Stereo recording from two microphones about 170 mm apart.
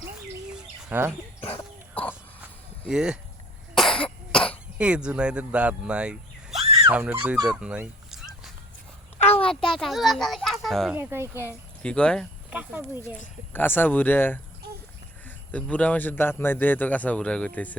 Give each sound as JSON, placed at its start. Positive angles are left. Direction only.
{"t": 0.9, "sound": "speech", "side_deg": -15}
{"t": 2.0, "sound": "a sound", "side_deg": 10}
{"t": 2.9, "sound": "a child's voice", "side_deg": -5}
{"t": 3.8, "sound": "cough", "side_deg": 5}
{"t": 4.8, "sound": "speech", "side_deg": -5}
{"t": 6.5, "sound": "a sound", "side_deg": -35}
{"t": 6.8, "sound": "speech", "side_deg": -10}
{"t": 9.1, "sound": "a sound", "side_deg": 35}
{"t": 9.5, "sound": "a child's voice", "side_deg": 0}
{"t": 10.9, "sound": "speech", "side_deg": -15}
{"t": 11.8, "sound": "a child's voice", "side_deg": 5}
{"t": 12.5, "sound": "speech", "side_deg": -10}
{"t": 13.5, "sound": "speech", "side_deg": 10}
{"t": 15.5, "sound": "speech", "side_deg": 10}